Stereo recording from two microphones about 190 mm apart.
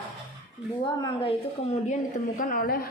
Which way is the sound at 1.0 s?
25° left (ahead or behind).